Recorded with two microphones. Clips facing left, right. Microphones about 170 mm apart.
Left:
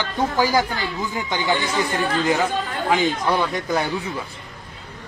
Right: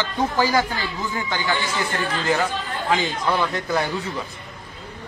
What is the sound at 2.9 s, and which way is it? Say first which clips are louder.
Speech: left 2 dB; 15° left (ahead or behind).